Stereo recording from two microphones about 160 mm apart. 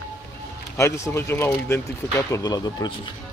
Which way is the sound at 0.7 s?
15° left (ahead or behind).